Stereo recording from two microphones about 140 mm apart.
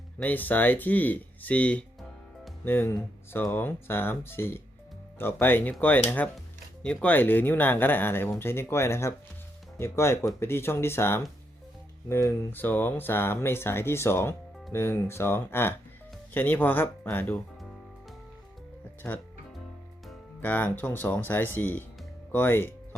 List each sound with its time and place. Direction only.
0.2 s speech: 10° left (ahead or behind)
2.6 s speech: 15° left (ahead or behind)
19.0 s speech: 5° left (ahead or behind)
20.4 s speech: 10° left (ahead or behind)